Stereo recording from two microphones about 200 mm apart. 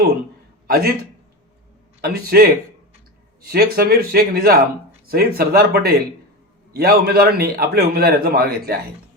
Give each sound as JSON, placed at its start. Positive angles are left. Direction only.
{"t": 0.7, "sound": "speech", "side_deg": -50}
{"t": 2.0, "sound": "speech", "side_deg": -50}